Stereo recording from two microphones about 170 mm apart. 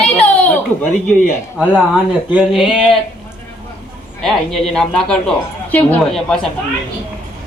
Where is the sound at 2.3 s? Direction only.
Centre (ahead or behind).